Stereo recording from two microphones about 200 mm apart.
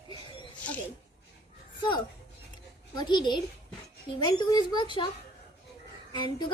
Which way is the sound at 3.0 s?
20° left (ahead or behind).